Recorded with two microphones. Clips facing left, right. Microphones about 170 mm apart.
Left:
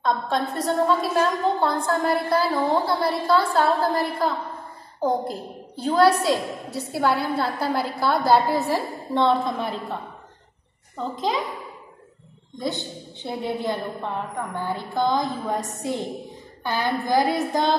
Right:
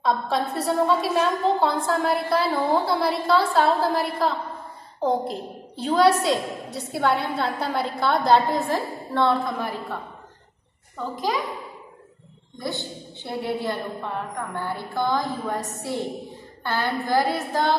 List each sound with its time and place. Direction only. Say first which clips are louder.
0.0 s a woman's voice: even; centre (ahead or behind)
8.7 s a woman's voice: left 1 dB; 20° left (ahead or behind)
11.0 s a woman's voice: left 1 dB; 25° left (ahead or behind)
12.5 s a woman's voice: left 2 dB; 20° left (ahead or behind)
16.6 s a woman's voice: left 1 dB; 15° left (ahead or behind)